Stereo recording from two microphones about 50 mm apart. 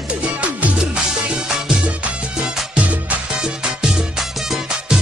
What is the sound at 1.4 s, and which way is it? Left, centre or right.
Music, centre.